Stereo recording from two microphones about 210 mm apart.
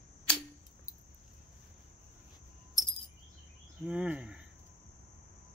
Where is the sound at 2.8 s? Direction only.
15° left (ahead or behind).